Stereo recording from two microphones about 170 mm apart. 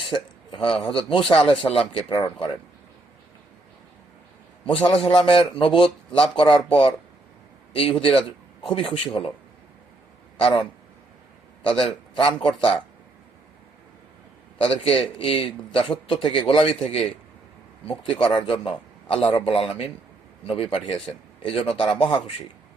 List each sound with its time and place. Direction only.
0.1 s speech: 30° left (ahead or behind)
4.7 s speech: 30° left (ahead or behind)
10.3 s speech: 30° left (ahead or behind)
14.6 s speech: 35° left (ahead or behind)